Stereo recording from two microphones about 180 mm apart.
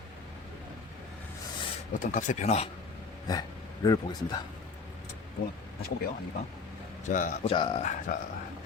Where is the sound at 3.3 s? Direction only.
20° left (ahead or behind).